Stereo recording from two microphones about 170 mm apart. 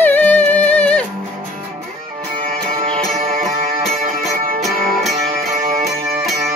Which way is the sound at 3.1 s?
Centre (ahead or behind).